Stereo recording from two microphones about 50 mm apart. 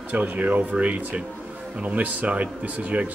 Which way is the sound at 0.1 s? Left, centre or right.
Right.